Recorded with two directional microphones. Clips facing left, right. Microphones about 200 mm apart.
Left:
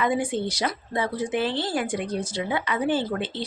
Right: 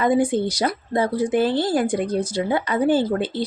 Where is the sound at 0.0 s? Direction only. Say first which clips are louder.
Right 6 dB; 40° right (ahead or behind).